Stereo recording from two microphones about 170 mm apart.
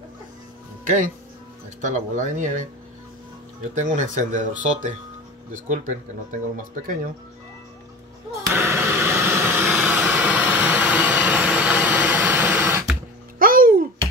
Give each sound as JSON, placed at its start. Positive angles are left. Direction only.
{"t": 0.8, "sound": "speech", "side_deg": -50}
{"t": 3.7, "sound": "speech", "side_deg": -45}
{"t": 8.5, "sound": "vehicle", "side_deg": -15}
{"t": 13.4, "sound": "babbling", "side_deg": -55}